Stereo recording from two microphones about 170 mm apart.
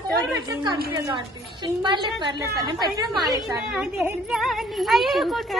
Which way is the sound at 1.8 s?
25° right (ahead or behind).